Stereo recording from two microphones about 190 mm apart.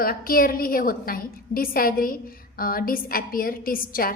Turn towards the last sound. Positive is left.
turn(degrees=50)  # may be behind; listen again after turning